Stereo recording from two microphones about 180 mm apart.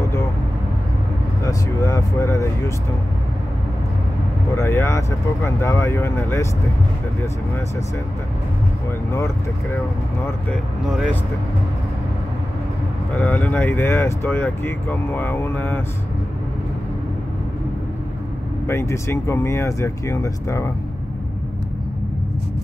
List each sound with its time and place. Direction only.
1.4 s speech: 15° left (ahead or behind)
4.6 s speech: 15° left (ahead or behind)
9.1 s speech: 15° left (ahead or behind)
13.2 s speech: 10° left (ahead or behind)
18.7 s speech: 15° left (ahead or behind)